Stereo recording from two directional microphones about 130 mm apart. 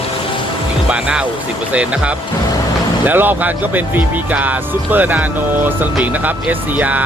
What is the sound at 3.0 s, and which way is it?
Speech, 15° right (ahead or behind).